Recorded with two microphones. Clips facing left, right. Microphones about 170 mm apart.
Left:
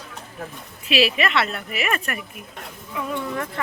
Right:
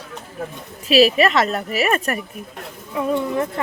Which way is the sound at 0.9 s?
40° right (ahead or behind).